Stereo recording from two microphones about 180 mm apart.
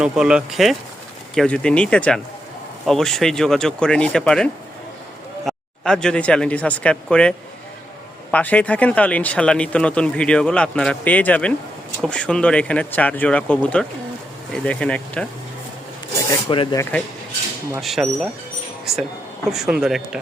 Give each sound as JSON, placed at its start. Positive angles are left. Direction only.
{"t": 0.0, "sound": "speech", "side_deg": -5}
{"t": 5.5, "sound": "speech", "side_deg": 5}
{"t": 16.5, "sound": "speech", "side_deg": 25}
{"t": 16.9, "sound": "speech", "side_deg": 5}
{"t": 19.5, "sound": "speech", "side_deg": 0}